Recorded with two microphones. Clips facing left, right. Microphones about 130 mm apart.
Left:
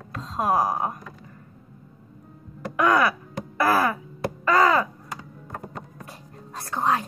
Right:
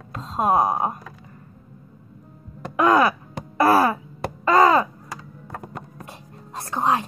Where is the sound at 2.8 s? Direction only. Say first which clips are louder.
Right 3 dB; 30° right (ahead or behind).